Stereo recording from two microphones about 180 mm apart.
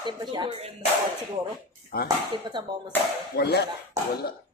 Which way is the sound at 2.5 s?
25° right (ahead or behind).